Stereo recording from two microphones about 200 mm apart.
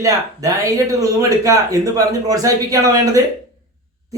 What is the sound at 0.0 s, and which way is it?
Speech, 15° right (ahead or behind).